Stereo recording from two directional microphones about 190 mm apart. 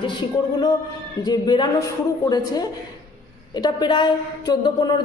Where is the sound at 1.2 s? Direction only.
20° left (ahead or behind).